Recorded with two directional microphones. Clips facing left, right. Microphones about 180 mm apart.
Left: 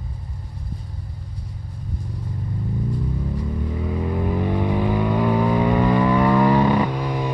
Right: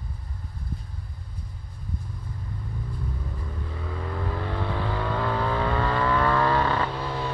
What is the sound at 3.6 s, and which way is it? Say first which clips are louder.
Vehicle: left 7 dB; 15° left (ahead or behind).